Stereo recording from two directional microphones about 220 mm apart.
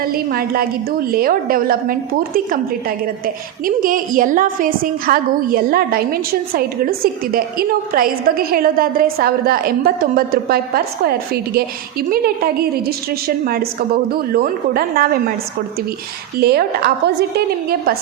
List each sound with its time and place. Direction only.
0.0 s a woman's voice: 40° right (ahead or behind)
3.8 s a woman's voice: 40° right (ahead or behind)
12.1 s a woman's voice: 45° right (ahead or behind)
16.4 s a woman's voice: 45° right (ahead or behind)